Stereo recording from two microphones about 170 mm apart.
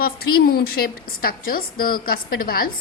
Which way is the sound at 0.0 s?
65° left (ahead or behind).